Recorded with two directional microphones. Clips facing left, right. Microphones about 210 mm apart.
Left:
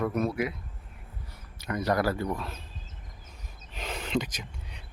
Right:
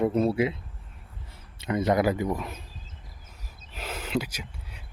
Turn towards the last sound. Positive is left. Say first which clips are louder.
# right 1 dB
turn(degrees=-5)  # may be behind; listen again after turning